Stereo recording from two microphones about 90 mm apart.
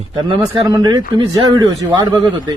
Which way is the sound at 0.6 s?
45° right (ahead or behind).